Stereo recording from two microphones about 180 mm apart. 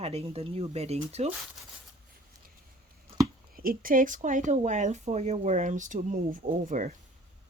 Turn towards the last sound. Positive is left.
turn(degrees=-45)  # may be behind; listen again after turning